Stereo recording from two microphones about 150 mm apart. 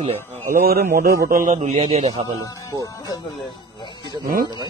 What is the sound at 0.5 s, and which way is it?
A man's voice, 80° right.